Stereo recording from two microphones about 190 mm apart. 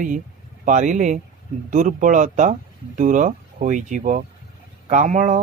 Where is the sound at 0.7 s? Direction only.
40° right (ahead or behind).